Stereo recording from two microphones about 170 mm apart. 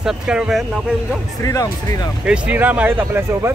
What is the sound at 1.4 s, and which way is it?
Speech, 20° left (ahead or behind).